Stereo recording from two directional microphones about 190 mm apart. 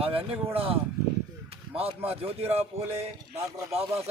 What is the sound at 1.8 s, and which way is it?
Speech, 30° right (ahead or behind).